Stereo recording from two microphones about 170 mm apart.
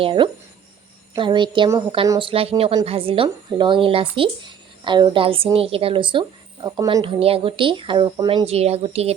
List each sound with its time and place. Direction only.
0.0 s speech: 30° right (ahead or behind)
8.4 s speech: 35° right (ahead or behind)